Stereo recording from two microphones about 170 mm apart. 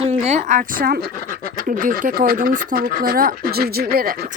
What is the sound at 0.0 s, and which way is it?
Speech, 40° right (ahead or behind).